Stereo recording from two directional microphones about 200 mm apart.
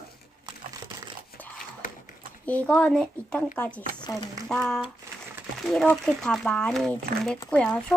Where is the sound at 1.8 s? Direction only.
45° left (ahead or behind).